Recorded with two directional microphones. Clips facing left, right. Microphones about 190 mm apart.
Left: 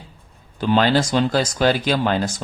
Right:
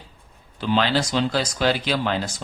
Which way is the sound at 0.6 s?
45° left (ahead or behind).